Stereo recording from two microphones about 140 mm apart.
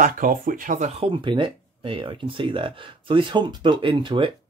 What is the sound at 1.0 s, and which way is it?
Speech, 35° right (ahead or behind).